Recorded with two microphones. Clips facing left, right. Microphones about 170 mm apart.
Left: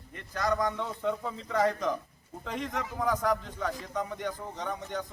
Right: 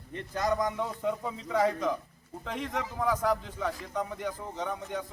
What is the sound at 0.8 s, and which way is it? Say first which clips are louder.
A man's voice: even; 10° right (ahead or behind).